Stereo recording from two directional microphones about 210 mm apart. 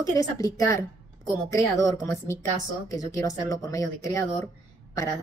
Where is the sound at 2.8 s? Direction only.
15° left (ahead or behind).